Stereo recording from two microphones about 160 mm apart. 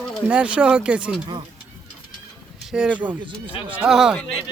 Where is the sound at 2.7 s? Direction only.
5° right (ahead or behind).